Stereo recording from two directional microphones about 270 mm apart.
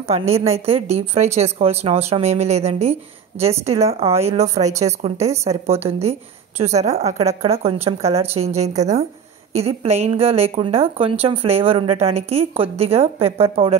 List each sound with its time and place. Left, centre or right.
0.3 s speech: centre